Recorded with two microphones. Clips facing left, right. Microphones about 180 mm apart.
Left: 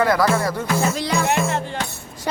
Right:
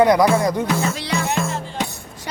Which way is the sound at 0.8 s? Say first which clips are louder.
Left 2 dB; 40° left (ahead or behind).